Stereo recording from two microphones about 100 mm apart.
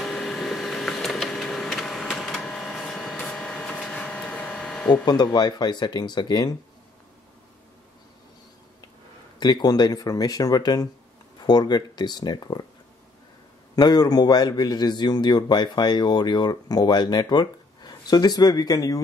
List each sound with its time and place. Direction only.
0.0 s printer: 5° left (ahead or behind)
5.0 s a man's voice: 45° left (ahead or behind)
9.4 s a man's voice: 45° left (ahead or behind)
13.7 s a man's voice: 40° left (ahead or behind)